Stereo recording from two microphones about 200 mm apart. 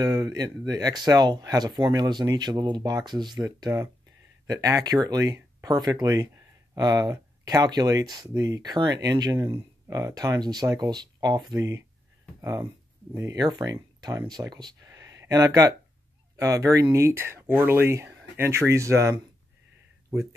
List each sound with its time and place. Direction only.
0.0 s speech: 20° right (ahead or behind)